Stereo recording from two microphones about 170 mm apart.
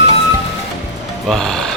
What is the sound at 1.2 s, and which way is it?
Music, centre (ahead or behind).